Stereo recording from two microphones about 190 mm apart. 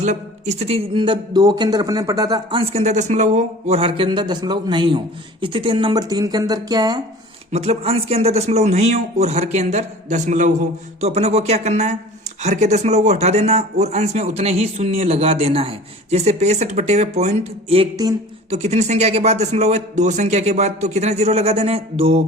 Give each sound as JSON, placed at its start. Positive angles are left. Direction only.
{"t": 0.0, "sound": "a man's voice", "side_deg": -40}
{"t": 7.5, "sound": "speech", "side_deg": -35}